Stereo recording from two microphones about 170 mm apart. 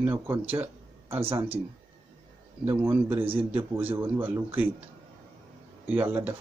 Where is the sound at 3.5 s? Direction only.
10° right (ahead or behind).